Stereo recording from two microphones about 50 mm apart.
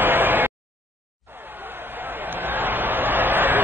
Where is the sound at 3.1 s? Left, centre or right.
Right.